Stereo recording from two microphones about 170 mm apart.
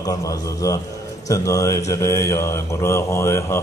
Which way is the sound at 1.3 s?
20° left (ahead or behind).